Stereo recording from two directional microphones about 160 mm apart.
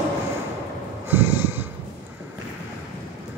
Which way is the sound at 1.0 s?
10° right (ahead or behind).